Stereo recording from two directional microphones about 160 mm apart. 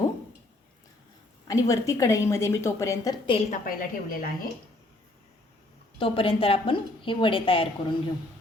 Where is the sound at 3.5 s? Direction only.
60° left (ahead or behind).